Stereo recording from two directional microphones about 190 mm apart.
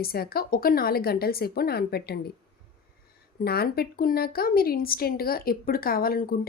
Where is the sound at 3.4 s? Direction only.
55° left (ahead or behind).